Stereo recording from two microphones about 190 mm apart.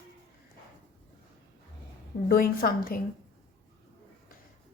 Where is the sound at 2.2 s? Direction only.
50° left (ahead or behind).